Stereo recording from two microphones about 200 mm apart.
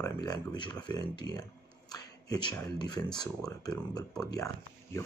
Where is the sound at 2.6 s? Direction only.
20° left (ahead or behind).